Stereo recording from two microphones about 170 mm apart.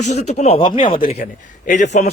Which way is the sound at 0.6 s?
30° left (ahead or behind).